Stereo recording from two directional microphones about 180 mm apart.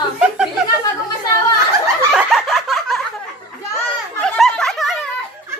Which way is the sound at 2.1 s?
5° right (ahead or behind).